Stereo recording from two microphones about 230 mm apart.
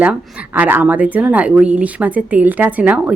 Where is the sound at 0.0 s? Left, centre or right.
Centre.